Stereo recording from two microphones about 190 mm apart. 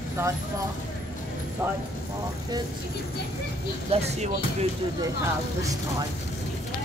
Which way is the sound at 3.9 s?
35° right (ahead or behind).